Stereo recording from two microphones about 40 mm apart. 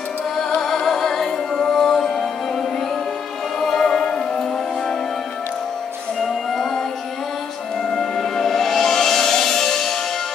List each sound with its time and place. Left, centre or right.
0.6 s music: centre
3.8 s music: centre
6.2 s music: centre
7.9 s music: centre